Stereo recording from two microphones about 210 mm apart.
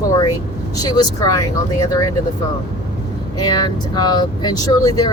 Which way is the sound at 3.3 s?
20° left (ahead or behind).